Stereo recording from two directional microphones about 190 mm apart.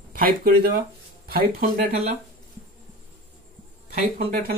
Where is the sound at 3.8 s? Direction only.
50° right (ahead or behind).